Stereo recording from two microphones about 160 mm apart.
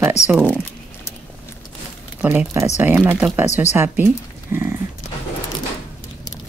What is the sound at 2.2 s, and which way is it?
Speech, 10° right (ahead or behind).